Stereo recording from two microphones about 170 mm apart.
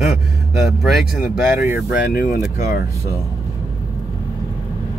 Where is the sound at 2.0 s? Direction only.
60° left (ahead or behind).